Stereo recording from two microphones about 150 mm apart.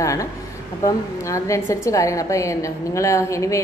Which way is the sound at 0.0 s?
20° left (ahead or behind).